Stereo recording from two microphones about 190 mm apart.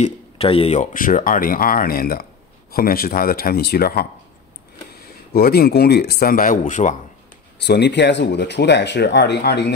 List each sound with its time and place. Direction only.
0.0 s speech: 30° left (ahead or behind)
7.6 s speech: 65° left (ahead or behind)